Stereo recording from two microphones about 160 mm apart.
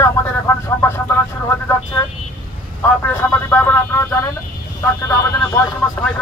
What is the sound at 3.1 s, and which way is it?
Speech, 15° left (ahead or behind).